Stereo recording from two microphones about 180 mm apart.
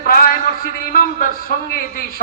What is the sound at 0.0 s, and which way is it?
A man's voice, 55° left (ahead or behind).